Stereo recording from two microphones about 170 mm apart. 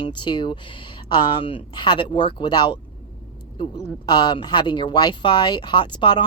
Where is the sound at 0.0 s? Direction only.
25° left (ahead or behind).